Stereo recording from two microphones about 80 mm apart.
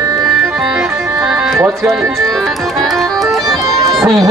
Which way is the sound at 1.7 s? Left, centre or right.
Right.